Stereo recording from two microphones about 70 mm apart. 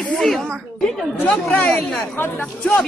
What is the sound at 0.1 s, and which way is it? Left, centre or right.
Speech, centre.